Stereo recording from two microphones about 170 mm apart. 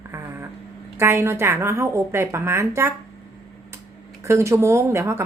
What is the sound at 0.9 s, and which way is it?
A woman's voice, 15° right (ahead or behind).